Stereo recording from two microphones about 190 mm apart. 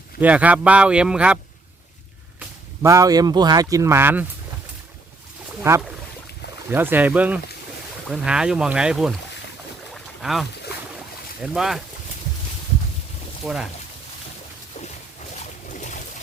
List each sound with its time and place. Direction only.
0.2 s speech: 10° right (ahead or behind)
2.4 s speech: 15° right (ahead or behind)
5.7 s speech: 15° right (ahead or behind)
9.9 s boat: centre (ahead or behind)
11.3 s speech: 5° right (ahead or behind)
13.4 s speech: 5° right (ahead or behind)
15.7 s a sound: 40° left (ahead or behind)